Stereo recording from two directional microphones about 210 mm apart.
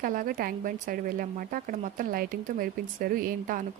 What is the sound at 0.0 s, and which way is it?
Speech, 40° right (ahead or behind).